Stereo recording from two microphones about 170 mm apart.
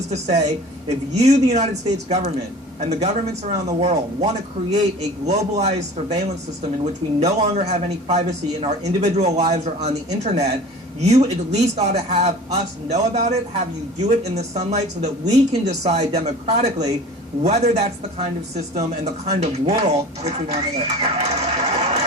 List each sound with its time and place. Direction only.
0.1 s speech: 40° right (ahead or behind)